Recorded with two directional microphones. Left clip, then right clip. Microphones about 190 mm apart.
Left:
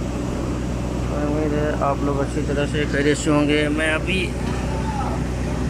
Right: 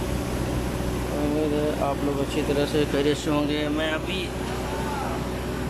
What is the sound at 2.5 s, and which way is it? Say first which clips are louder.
Speech: left 2 dB; 15° right (ahead or behind).